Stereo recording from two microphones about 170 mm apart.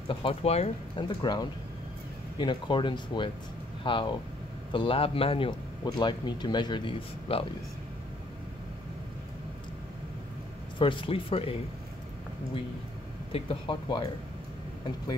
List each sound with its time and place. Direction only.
0.1 s speech: 35° left (ahead or behind)
10.8 s speech: 30° left (ahead or behind)
13.3 s speech: 30° left (ahead or behind)